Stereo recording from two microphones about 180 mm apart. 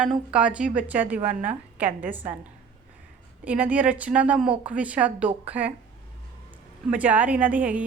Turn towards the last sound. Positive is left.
turn(degrees=-10)  # may be behind; listen again after turning